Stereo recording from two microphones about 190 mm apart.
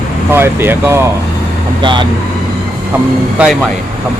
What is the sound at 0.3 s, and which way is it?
Speech, 10° right (ahead or behind).